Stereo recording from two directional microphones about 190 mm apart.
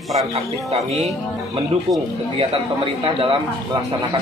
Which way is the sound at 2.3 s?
25° right (ahead or behind).